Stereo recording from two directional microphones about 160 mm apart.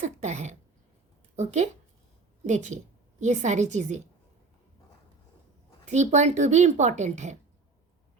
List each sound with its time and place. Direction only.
0.0 s a woman's voice: 45° right (ahead or behind)
5.8 s speech: 45° right (ahead or behind)